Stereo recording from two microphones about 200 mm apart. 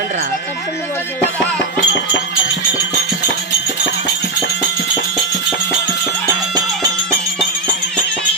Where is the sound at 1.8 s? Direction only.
65° left (ahead or behind).